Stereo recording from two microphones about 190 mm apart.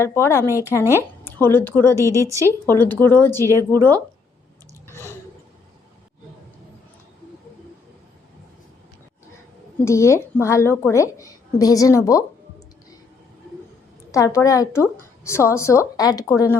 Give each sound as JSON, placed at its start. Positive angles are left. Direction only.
{"t": 0.0, "sound": "a woman's voice", "side_deg": 15}
{"t": 0.4, "sound": "speech", "side_deg": -15}
{"t": 1.4, "sound": "a woman's voice", "side_deg": 10}
{"t": 2.0, "sound": "speech", "side_deg": -15}
{"t": 2.6, "sound": "a woman's voice", "side_deg": 10}
{"t": 9.8, "sound": "a woman's voice", "side_deg": 15}
{"t": 14.1, "sound": "a woman's voice", "side_deg": 15}